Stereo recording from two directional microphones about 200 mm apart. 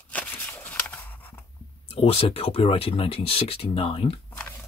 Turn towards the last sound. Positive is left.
turn(degrees=30)  # may be behind; listen again after turning